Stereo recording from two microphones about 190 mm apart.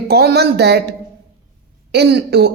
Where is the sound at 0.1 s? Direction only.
60° right (ahead or behind).